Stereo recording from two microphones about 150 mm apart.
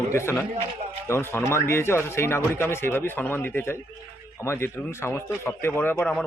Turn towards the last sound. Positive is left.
turn(degrees=15)  # may be behind; listen again after turning